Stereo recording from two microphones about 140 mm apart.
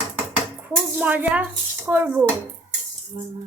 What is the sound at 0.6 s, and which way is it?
Speech, 10° right (ahead or behind).